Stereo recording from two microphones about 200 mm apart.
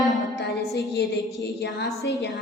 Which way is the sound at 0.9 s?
55° left (ahead or behind).